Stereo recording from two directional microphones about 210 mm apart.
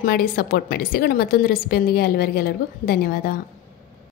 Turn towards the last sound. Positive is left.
turn(degrees=45)  # may be behind; listen again after turning